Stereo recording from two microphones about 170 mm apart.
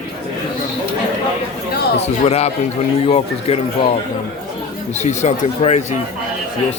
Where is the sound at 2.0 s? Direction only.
40° left (ahead or behind).